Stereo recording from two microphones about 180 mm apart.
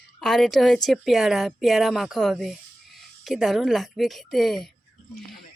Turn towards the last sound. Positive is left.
turn(degrees=0)  # may be behind; listen again after turning